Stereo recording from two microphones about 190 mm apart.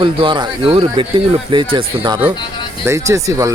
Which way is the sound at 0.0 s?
25° right (ahead or behind).